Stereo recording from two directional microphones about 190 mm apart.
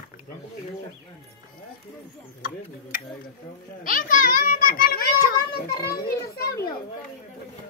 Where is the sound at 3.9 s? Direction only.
45° left (ahead or behind).